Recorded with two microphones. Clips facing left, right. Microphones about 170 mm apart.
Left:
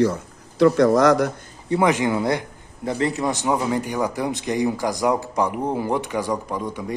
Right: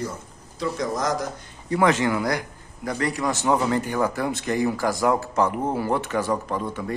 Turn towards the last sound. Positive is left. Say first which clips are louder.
# even
turn(degrees=15)  # may be behind; listen again after turning